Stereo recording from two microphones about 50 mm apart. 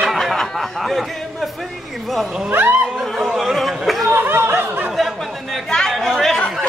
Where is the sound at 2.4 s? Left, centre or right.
Right.